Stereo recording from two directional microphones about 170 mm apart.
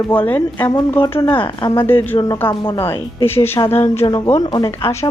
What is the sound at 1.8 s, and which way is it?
Speech, 10° left (ahead or behind).